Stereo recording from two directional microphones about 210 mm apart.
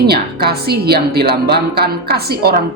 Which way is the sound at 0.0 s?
50° right (ahead or behind).